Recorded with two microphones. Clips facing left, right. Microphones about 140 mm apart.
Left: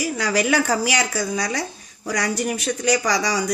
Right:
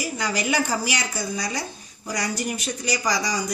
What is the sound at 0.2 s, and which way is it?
Speech, 90° left.